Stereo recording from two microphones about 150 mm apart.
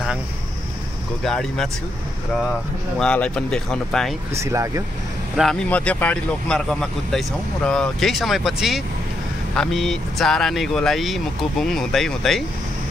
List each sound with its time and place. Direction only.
1.2 s speech: centre (ahead or behind)
3.0 s speech: 5° left (ahead or behind)
4.4 s speech: 20° right (ahead or behind)
5.3 s speech: centre (ahead or behind)